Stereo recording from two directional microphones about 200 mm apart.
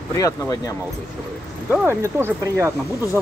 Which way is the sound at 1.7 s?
10° right (ahead or behind).